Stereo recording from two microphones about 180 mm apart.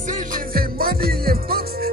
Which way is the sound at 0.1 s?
50° right (ahead or behind).